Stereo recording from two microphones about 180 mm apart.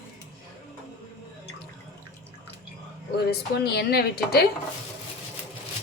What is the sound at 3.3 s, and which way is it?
A woman's voice, 65° left (ahead or behind).